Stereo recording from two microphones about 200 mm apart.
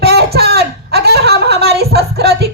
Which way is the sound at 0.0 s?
55° right (ahead or behind).